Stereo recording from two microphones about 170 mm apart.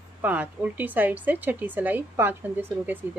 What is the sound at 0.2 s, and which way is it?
A woman's voice, 10° right (ahead or behind).